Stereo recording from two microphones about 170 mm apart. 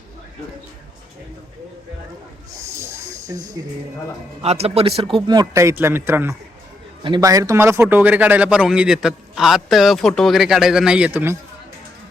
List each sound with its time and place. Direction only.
2.6 s snake: 15° right (ahead or behind)
4.4 s speech: 35° right (ahead or behind)
5.1 s a man's voice: 25° right (ahead or behind)